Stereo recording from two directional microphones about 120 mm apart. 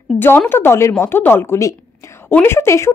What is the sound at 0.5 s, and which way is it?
Speech, 20° left (ahead or behind).